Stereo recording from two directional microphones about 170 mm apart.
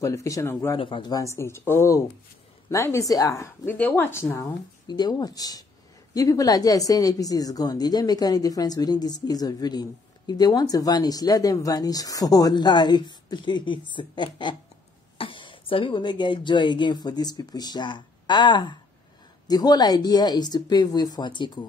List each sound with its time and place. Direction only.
0.0 s speech: 20° left (ahead or behind)
0.7 s speech: 30° left (ahead or behind)